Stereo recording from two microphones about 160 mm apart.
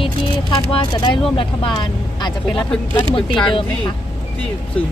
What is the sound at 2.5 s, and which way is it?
Speech, 5° left (ahead or behind).